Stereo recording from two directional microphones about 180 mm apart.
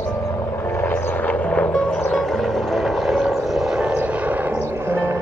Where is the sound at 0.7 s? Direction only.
10° left (ahead or behind).